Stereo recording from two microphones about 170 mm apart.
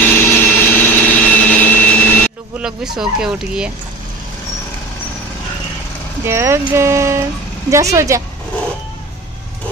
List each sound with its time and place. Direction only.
0.0 s vehicle: 10° left (ahead or behind)
2.6 s speech: 5° right (ahead or behind)
6.2 s speech: 15° right (ahead or behind)